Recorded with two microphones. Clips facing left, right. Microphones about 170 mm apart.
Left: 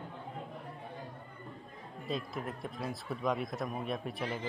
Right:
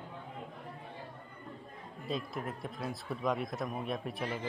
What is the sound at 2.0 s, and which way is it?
Speech, centre (ahead or behind).